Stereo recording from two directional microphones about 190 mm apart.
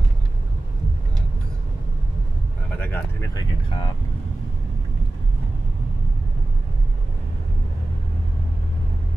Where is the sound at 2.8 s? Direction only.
10° left (ahead or behind).